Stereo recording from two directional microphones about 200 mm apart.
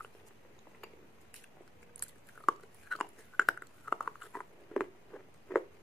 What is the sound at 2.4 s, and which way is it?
Chewing, centre (ahead or behind).